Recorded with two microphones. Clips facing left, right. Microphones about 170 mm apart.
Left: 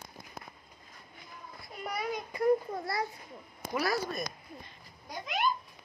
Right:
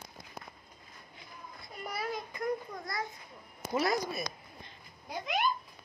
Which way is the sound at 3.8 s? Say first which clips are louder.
Right 1 dB; 20° right (ahead or behind).